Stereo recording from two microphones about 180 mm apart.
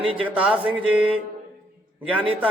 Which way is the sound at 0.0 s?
30° right (ahead or behind).